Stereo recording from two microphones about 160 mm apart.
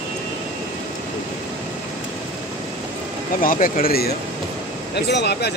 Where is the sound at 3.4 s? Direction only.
60° left (ahead or behind).